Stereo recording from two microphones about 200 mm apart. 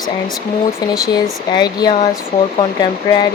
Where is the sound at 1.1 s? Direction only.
20° left (ahead or behind).